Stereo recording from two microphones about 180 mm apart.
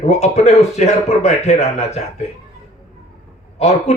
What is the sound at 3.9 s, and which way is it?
Speech, 35° left (ahead or behind).